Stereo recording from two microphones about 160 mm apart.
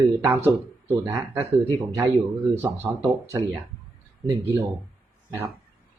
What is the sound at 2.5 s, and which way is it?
Speech, 15° right (ahead or behind).